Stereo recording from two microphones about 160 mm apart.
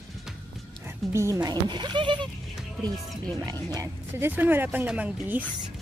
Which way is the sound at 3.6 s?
25° right (ahead or behind).